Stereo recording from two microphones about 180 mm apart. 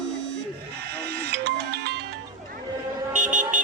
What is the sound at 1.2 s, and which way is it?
Music, 65° right (ahead or behind).